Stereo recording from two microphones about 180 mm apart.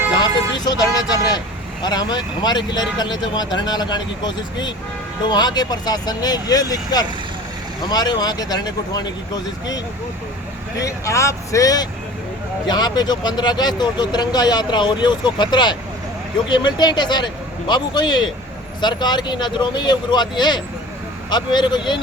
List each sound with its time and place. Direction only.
0.1 s speech: 25° left (ahead or behind)